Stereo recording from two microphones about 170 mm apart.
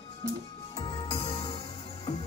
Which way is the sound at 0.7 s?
30° left (ahead or behind).